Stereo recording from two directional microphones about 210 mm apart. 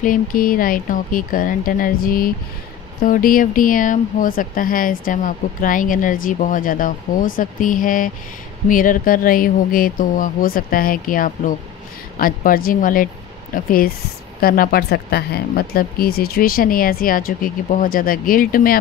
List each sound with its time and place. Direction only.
0.0 s speech: 40° left (ahead or behind)